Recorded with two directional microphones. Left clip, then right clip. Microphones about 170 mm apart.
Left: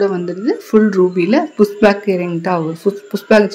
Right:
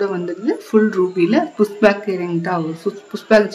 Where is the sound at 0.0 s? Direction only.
15° left (ahead or behind).